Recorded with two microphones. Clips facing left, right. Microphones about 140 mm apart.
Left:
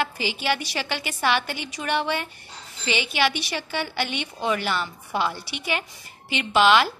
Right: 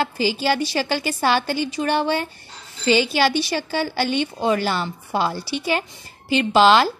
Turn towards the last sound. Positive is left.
turn(degrees=-35)  # may be behind; listen again after turning